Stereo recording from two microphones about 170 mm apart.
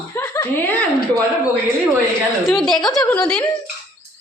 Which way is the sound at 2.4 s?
Centre (ahead or behind).